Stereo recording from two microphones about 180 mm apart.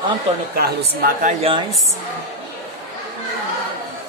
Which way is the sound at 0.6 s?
55° right (ahead or behind).